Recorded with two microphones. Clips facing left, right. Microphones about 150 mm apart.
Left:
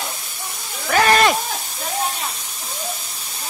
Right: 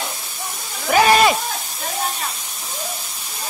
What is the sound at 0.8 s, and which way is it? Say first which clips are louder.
Sheep: right 2 dB; 10° right (ahead or behind).